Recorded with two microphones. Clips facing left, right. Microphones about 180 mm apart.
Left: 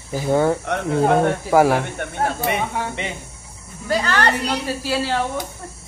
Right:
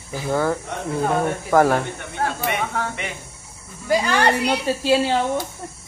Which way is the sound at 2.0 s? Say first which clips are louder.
Left 6 dB; 55° left (ahead or behind).